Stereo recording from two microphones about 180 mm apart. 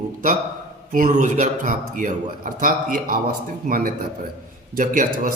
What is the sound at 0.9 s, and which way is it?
A man's voice, 45° right (ahead or behind).